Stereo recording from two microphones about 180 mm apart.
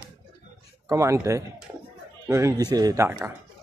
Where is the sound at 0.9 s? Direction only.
15° right (ahead or behind).